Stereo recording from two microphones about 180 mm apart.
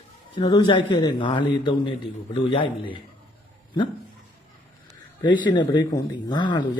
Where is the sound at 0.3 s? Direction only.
25° left (ahead or behind).